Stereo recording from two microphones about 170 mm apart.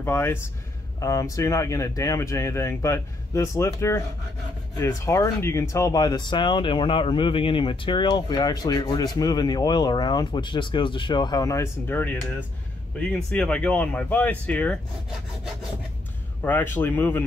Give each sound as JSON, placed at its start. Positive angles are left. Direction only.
{"t": 0.0, "sound": "speech", "side_deg": 15}
{"t": 16.4, "sound": "speech", "side_deg": 10}